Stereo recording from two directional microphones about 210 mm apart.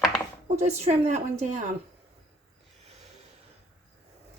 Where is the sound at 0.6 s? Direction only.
30° right (ahead or behind).